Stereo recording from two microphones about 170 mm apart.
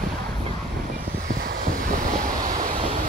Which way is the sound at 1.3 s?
60° right (ahead or behind).